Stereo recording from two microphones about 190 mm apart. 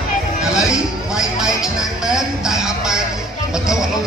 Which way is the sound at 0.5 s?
5° right (ahead or behind).